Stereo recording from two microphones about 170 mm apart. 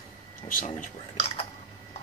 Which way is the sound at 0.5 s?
50° left (ahead or behind).